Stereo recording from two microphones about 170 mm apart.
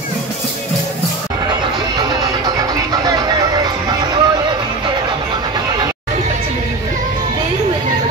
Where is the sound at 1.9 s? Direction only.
25° right (ahead or behind).